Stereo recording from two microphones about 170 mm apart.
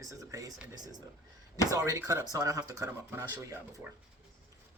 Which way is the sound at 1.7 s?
20° right (ahead or behind).